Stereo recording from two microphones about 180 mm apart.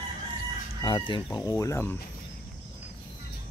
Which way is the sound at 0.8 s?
25° left (ahead or behind).